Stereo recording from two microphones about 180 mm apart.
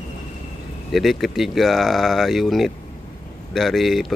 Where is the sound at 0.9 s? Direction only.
Centre (ahead or behind).